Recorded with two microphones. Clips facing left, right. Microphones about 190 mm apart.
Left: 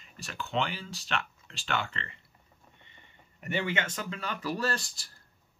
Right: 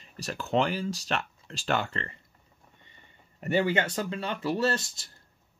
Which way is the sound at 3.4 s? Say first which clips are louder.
Right 6 dB; 35° right (ahead or behind).